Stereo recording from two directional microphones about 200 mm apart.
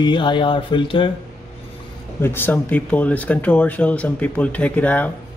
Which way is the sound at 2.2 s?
10° left (ahead or behind).